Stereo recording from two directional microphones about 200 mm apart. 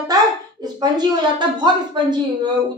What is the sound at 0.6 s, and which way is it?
A woman's voice, 20° right (ahead or behind).